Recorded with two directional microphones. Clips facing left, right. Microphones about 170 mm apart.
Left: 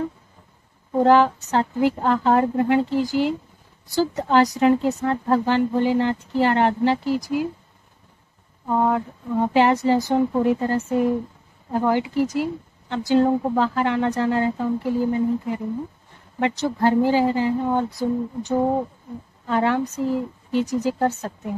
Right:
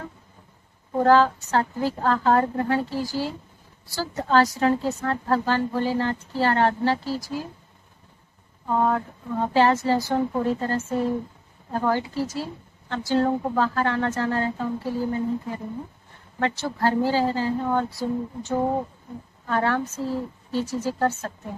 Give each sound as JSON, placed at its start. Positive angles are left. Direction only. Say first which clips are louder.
{"t": 1.0, "sound": "a woman's voice", "louder": "left 2 dB", "side_deg": 20}
{"t": 8.6, "sound": "speech", "louder": "left 2 dB", "side_deg": 15}